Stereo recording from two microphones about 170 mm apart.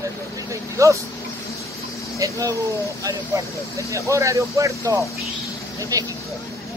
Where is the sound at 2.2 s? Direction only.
20° right (ahead or behind).